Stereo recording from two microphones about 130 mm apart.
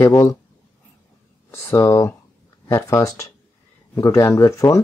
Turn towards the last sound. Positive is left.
turn(degrees=25)  # may be behind; listen again after turning